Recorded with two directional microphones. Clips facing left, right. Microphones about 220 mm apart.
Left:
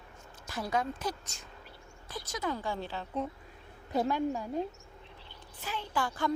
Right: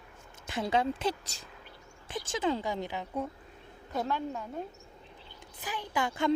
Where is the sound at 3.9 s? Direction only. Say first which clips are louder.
Left 3 dB; 15° left (ahead or behind).